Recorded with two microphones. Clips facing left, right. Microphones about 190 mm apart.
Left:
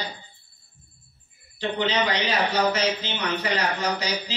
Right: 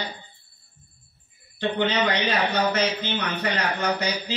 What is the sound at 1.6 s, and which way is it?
A man's voice, 55° right (ahead or behind).